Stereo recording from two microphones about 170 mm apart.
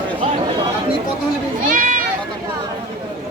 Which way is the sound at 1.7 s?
55° right (ahead or behind).